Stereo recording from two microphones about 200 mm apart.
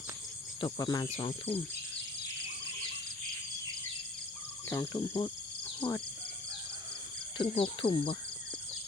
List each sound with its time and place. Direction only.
0.6 s speech: 20° left (ahead or behind)
1.0 s speech: 30° left (ahead or behind)
4.7 s speech: 15° left (ahead or behind)
4.9 s speech: 25° left (ahead or behind)
7.3 s speech: 25° left (ahead or behind)